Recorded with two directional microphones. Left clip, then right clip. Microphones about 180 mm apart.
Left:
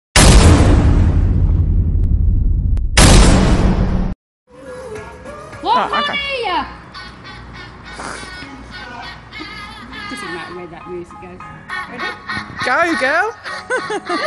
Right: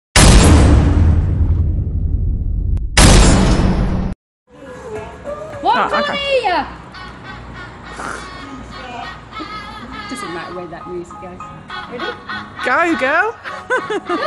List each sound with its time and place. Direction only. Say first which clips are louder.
0.1 s music: even; centre (ahead or behind)
2.9 s a sound: even; centre (ahead or behind)
5.9 s speech: right 1 dB; 15° right (ahead or behind)
9.9 s a sound: even; centre (ahead or behind)
11.7 s music: left 1 dB; 15° left (ahead or behind)
12.6 s snicker: even; 5° left (ahead or behind)